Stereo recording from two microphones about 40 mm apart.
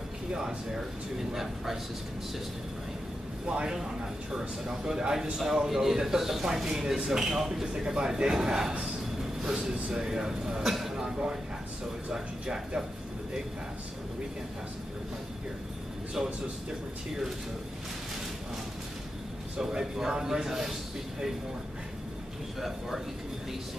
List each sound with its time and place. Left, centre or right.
0.3 s speech: right
1.3 s speech: centre
3.4 s speech: right
10.6 s a sound: centre
12.1 s speech: centre
16.2 s speech: centre
19.7 s speech: centre